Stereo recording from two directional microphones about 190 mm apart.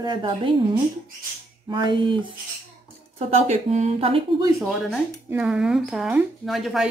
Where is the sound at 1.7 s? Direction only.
25° right (ahead or behind).